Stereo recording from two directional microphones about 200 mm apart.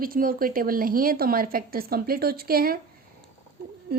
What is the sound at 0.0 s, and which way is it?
Speech, 45° right (ahead or behind).